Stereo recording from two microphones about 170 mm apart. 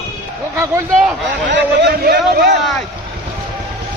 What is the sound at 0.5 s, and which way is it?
Speech, 15° right (ahead or behind).